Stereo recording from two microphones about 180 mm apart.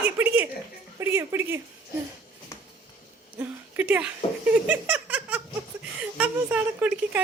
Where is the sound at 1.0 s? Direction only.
15° right (ahead or behind).